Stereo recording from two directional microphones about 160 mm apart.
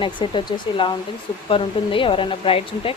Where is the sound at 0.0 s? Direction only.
30° left (ahead or behind).